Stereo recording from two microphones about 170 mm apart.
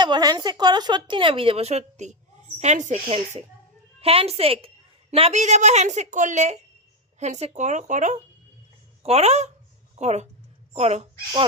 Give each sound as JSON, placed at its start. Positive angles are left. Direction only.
{"t": 0.0, "sound": "a woman's voice", "side_deg": -25}